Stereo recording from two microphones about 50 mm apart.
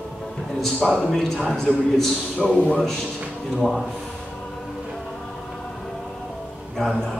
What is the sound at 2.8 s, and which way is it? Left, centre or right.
Speech, centre.